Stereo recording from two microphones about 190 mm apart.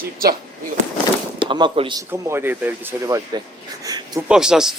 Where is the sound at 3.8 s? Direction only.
20° right (ahead or behind).